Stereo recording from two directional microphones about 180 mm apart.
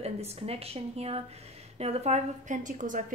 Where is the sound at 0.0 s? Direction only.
35° right (ahead or behind).